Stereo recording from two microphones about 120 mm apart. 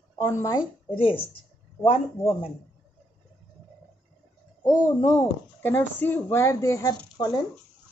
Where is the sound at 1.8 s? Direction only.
55° left (ahead or behind).